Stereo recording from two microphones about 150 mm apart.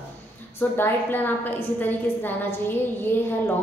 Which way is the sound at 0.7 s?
15° left (ahead or behind).